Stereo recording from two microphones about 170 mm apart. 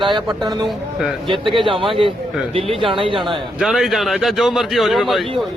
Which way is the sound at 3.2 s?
Centre (ahead or behind).